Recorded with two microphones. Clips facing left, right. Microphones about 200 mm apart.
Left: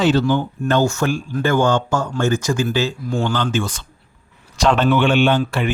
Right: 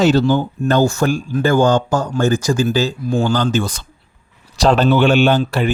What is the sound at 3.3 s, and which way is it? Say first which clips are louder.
A man's voice: right 4 dB; 40° right (ahead or behind).